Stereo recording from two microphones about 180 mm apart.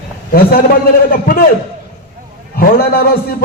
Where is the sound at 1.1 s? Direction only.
55° left (ahead or behind).